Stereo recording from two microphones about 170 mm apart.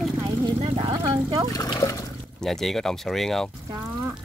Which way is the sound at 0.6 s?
30° right (ahead or behind).